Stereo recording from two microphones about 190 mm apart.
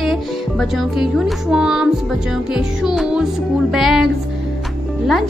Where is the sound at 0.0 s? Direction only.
Centre (ahead or behind).